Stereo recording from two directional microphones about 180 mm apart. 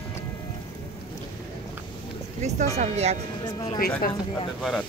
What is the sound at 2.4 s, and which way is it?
Speech, 40° right (ahead or behind).